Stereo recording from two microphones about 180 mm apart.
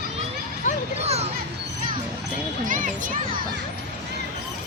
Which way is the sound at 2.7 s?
45° right (ahead or behind).